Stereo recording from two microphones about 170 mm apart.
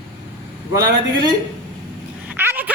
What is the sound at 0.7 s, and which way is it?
Speech, 25° right (ahead or behind).